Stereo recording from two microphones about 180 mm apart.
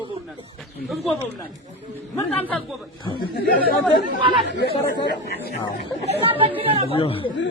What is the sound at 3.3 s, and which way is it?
Speech, 55° left (ahead or behind).